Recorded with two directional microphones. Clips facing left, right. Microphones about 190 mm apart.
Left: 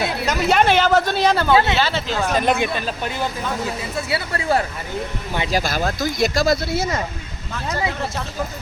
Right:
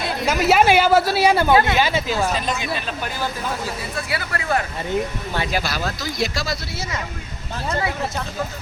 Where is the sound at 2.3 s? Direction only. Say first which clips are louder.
Left 6 dB; 60° left (ahead or behind).